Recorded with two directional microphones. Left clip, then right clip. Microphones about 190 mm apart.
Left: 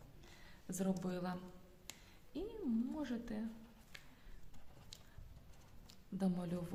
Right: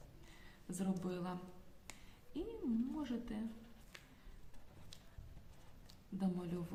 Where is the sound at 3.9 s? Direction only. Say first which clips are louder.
Left 1 dB; 10° left (ahead or behind).